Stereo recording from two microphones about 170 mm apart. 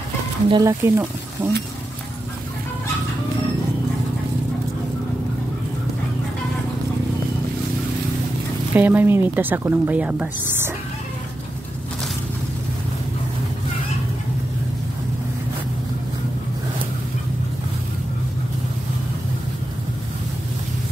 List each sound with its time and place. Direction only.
0.5 s speech: 20° right (ahead or behind)
8.7 s speech: 10° right (ahead or behind)